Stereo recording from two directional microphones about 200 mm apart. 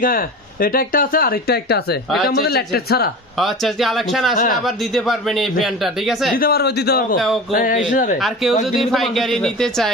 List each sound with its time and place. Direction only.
0.0 s speech: 45° left (ahead or behind)
3.3 s a man's voice: centre (ahead or behind)
6.3 s speech: 50° left (ahead or behind)
8.2 s a man's voice: centre (ahead or behind)